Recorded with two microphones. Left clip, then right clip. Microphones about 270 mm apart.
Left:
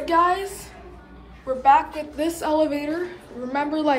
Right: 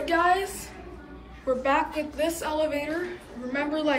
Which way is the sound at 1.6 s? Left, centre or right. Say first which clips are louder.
Left 10 dB; centre.